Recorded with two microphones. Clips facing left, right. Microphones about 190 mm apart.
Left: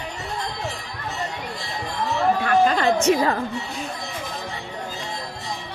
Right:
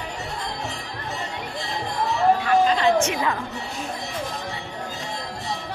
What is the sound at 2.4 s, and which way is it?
Music, 50° left (ahead or behind).